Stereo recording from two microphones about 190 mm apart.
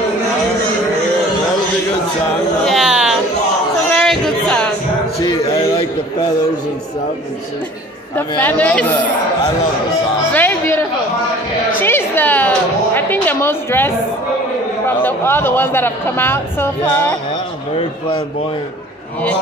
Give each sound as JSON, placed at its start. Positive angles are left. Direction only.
{"t": 2.6, "sound": "a sound", "side_deg": 0}
{"t": 8.4, "sound": "speech", "side_deg": 10}
{"t": 10.3, "sound": "music", "side_deg": 10}
{"t": 15.0, "sound": "speech", "side_deg": 10}